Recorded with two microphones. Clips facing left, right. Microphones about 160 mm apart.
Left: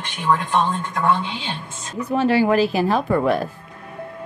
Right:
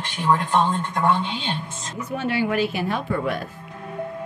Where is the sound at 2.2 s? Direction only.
35° left (ahead or behind).